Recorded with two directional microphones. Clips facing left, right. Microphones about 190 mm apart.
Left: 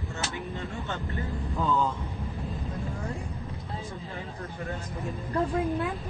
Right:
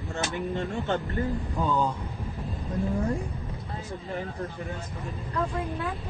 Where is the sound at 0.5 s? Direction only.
50° right (ahead or behind).